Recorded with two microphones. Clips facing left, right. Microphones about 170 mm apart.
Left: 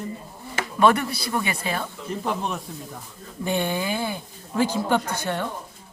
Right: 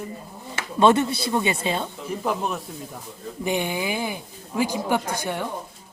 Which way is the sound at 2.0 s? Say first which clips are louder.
Right 1 dB; centre (ahead or behind).